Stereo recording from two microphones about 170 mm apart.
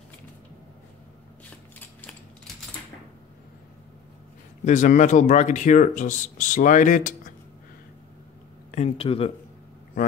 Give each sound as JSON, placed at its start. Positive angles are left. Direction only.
{"t": 4.6, "sound": "speech", "side_deg": 45}
{"t": 8.7, "sound": "speech", "side_deg": 35}
{"t": 10.0, "sound": "speech", "side_deg": 50}